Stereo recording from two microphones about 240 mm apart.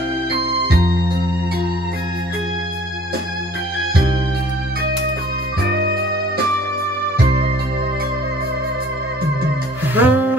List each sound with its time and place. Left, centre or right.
0.3 s music: right
5.7 s music: right
9.9 s music: centre